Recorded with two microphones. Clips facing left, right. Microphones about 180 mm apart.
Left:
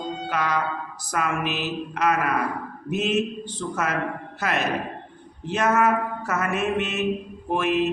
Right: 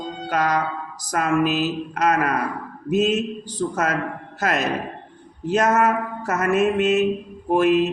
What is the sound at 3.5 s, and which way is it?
Speech, 40° right (ahead or behind).